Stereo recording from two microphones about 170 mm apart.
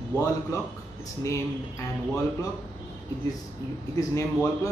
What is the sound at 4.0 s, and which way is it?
Speech, 20° left (ahead or behind).